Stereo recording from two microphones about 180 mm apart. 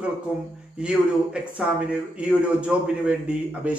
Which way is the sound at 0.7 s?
5° right (ahead or behind).